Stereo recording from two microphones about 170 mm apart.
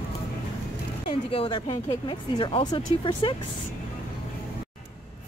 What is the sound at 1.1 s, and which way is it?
Speech, 30° left (ahead or behind).